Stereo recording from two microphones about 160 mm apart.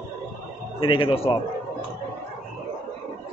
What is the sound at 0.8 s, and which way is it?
Speech, 30° left (ahead or behind).